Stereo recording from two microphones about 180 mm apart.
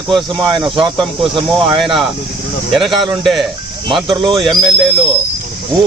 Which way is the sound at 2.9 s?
30° right (ahead or behind).